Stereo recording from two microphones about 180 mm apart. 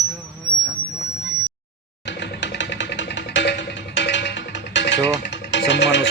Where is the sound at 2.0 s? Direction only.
85° left.